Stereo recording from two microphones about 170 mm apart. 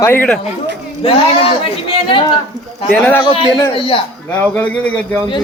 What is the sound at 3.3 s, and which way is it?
Speech, 35° left (ahead or behind).